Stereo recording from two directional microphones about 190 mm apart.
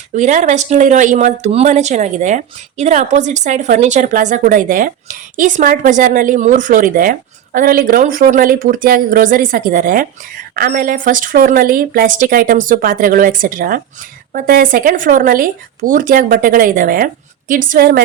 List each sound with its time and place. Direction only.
0.1 s speech: 40° right (ahead or behind)